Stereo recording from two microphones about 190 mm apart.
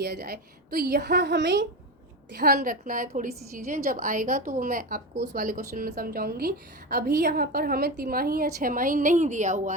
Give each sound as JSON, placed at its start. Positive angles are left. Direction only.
{"t": 0.0, "sound": "a woman's voice", "side_deg": -60}
{"t": 2.3, "sound": "a woman's voice", "side_deg": -55}
{"t": 5.3, "sound": "a woman's voice", "side_deg": -45}